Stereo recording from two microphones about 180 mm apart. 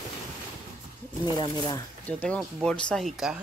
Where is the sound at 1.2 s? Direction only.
25° left (ahead or behind).